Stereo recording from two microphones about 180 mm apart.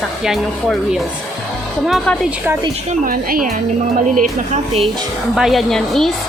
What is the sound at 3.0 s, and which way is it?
Speech, 50° right (ahead or behind).